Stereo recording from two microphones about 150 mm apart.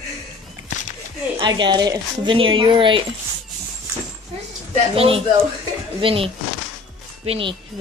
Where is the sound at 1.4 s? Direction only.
30° right (ahead or behind).